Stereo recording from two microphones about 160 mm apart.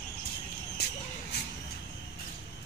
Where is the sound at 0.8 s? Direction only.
90° left.